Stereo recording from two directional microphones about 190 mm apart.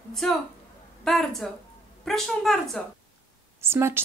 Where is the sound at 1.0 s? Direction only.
Centre (ahead or behind).